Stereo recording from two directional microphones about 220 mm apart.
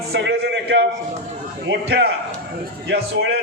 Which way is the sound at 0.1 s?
50° right (ahead or behind).